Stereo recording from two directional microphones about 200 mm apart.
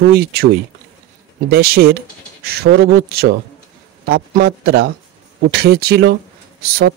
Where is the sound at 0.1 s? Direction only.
50° right (ahead or behind).